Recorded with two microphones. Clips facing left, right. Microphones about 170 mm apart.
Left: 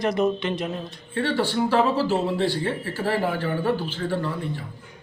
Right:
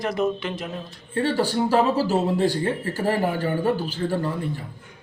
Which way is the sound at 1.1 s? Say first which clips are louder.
Right 2 dB; 40° right (ahead or behind).